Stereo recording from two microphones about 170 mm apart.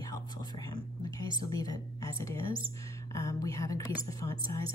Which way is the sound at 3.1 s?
20° left (ahead or behind).